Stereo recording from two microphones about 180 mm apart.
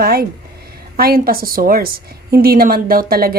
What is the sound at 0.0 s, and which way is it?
Speech, 55° right (ahead or behind).